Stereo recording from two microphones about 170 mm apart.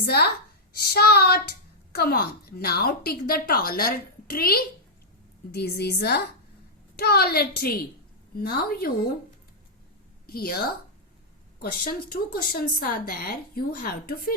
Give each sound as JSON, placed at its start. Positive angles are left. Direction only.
{"t": 0.0, "sound": "a woman's voice", "side_deg": 65}
{"t": 10.2, "sound": "a woman's voice", "side_deg": 65}
{"t": 11.6, "sound": "a woman's voice", "side_deg": 60}